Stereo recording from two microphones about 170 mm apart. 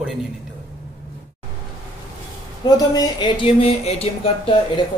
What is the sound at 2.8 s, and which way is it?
Speech, 20° left (ahead or behind).